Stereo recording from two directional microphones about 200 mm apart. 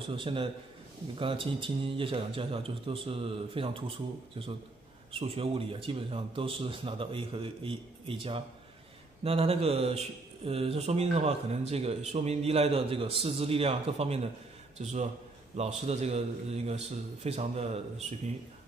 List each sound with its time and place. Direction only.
0.1 s a man's voice: 25° right (ahead or behind)
5.1 s a man's voice: 30° right (ahead or behind)